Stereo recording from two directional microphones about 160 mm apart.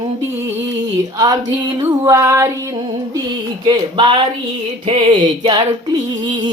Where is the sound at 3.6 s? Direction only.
30° right (ahead or behind).